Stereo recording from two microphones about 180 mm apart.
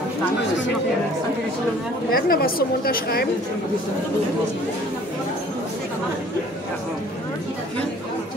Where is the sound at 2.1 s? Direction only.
55° left (ahead or behind).